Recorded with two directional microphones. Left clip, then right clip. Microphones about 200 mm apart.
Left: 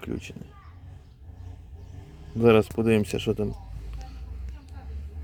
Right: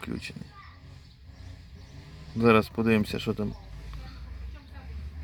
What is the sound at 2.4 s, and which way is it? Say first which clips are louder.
Speech: left 3 dB; 15° left (ahead or behind).